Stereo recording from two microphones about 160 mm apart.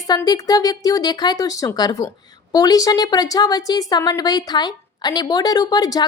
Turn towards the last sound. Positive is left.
turn(degrees=25)  # may be behind; listen again after turning